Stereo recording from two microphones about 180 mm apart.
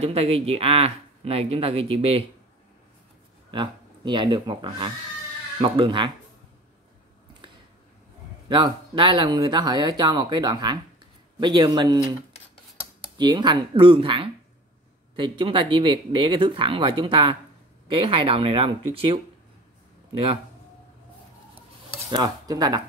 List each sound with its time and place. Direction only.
0.0 s speech: 35° right (ahead or behind)
3.5 s speech: 25° right (ahead or behind)
8.5 s speech: 25° right (ahead or behind)
13.2 s speech: 25° right (ahead or behind)
22.1 s speech: 20° right (ahead or behind)